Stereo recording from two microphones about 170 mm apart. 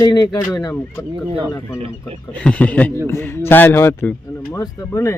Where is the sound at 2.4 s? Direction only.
10° left (ahead or behind).